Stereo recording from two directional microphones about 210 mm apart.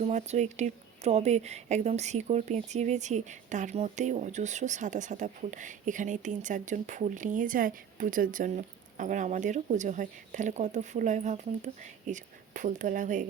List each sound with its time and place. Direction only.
0.0 s a woman's voice: 30° right (ahead or behind)